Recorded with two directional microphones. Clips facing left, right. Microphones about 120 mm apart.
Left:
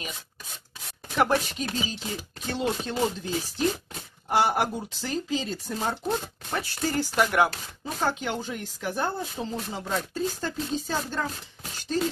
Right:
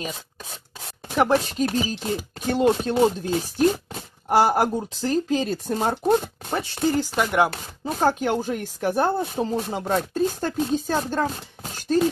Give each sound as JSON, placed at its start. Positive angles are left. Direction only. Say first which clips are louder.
{"t": 1.4, "sound": "speech", "louder": "right 8 dB", "side_deg": -35}
{"t": 4.3, "sound": "speech", "louder": "right 5 dB", "side_deg": -40}
{"t": 5.3, "sound": "speech", "louder": "right 6 dB", "side_deg": -55}
{"t": 6.5, "sound": "speech", "louder": "right 5 dB", "side_deg": -20}
{"t": 7.8, "sound": "speech", "louder": "right 7 dB", "side_deg": -45}